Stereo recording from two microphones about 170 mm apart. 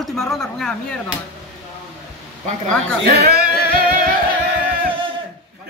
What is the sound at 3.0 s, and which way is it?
Music, 65° right (ahead or behind).